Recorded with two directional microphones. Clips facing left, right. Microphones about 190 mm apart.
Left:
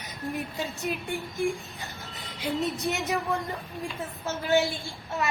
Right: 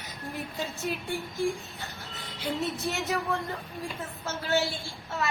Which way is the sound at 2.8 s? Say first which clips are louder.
Left 2 dB; 20° left (ahead or behind).